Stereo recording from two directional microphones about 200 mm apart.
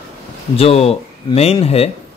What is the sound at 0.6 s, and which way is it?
Speech, 30° left (ahead or behind).